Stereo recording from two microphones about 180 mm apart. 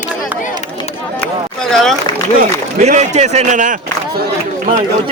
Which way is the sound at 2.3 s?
40° right (ahead or behind).